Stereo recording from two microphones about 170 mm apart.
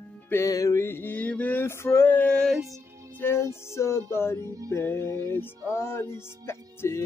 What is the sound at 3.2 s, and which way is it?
Male singing, 15° left (ahead or behind).